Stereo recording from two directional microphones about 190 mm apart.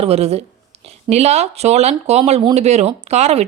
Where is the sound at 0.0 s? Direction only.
35° right (ahead or behind).